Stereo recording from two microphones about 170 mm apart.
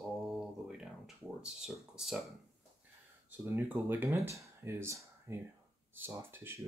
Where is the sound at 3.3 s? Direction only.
10° right (ahead or behind).